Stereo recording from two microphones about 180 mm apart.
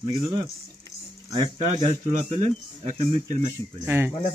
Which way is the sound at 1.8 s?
35° right (ahead or behind).